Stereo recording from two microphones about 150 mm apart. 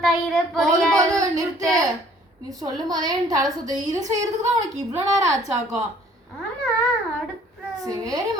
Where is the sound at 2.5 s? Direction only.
25° right (ahead or behind).